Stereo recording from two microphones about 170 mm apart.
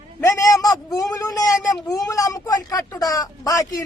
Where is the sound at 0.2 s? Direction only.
20° left (ahead or behind).